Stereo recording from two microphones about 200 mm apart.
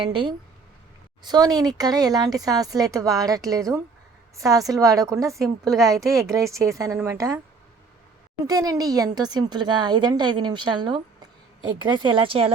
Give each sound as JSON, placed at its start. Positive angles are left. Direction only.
{"t": 0.0, "sound": "a woman's voice", "side_deg": -25}
{"t": 6.0, "sound": "speech", "side_deg": 0}
{"t": 6.3, "sound": "speech", "side_deg": -15}
{"t": 8.4, "sound": "a woman's voice", "side_deg": -20}